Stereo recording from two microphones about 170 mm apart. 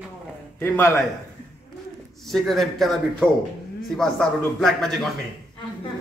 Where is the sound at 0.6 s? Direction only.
15° left (ahead or behind).